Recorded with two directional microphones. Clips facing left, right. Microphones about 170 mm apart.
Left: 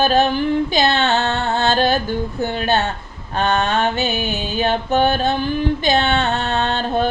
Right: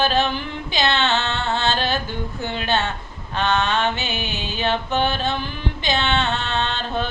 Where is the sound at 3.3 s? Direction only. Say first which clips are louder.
Left 3 dB; 40° left (ahead or behind).